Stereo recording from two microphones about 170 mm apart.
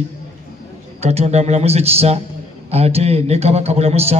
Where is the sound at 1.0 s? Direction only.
40° right (ahead or behind).